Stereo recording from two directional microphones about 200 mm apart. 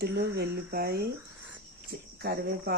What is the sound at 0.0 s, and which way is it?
Speech, 55° right (ahead or behind).